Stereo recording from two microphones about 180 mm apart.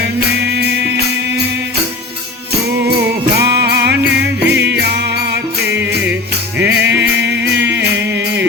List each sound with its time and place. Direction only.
3.4 s music: 65° right (ahead or behind)